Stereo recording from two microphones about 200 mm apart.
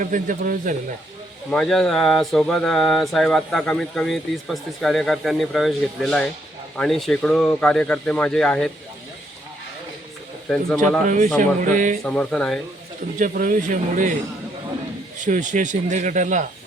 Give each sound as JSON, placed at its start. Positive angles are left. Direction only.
{"t": 0.0, "sound": "speech", "side_deg": -40}
{"t": 1.5, "sound": "speech", "side_deg": 0}
{"t": 11.0, "sound": "speech", "side_deg": -40}
{"t": 12.0, "sound": "speech", "side_deg": 5}
{"t": 13.1, "sound": "speech", "side_deg": -40}
{"t": 15.2, "sound": "speech", "side_deg": -40}